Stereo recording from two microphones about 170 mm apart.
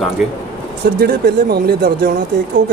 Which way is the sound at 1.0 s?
65° right (ahead or behind).